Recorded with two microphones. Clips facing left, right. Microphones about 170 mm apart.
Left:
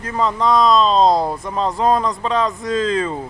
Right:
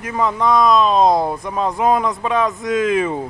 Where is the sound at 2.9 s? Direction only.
15° right (ahead or behind).